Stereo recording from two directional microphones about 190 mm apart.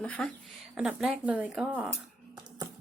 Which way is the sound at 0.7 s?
5° right (ahead or behind).